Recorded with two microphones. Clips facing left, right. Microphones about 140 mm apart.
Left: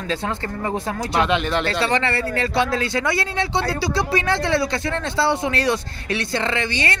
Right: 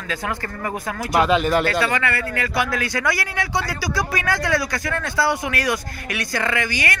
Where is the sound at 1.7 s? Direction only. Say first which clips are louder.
Even; 30° left (ahead or behind).